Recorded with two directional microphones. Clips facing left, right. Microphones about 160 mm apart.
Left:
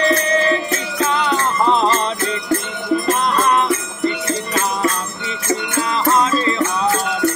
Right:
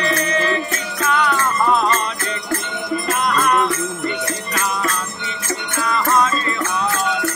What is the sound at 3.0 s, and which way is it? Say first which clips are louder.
Music: right 1 dB; 30° left (ahead or behind).